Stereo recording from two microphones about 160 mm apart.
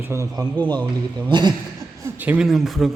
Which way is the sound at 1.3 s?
30° right (ahead or behind).